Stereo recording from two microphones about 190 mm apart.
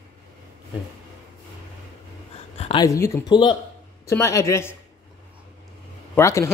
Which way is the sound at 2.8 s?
15° left (ahead or behind).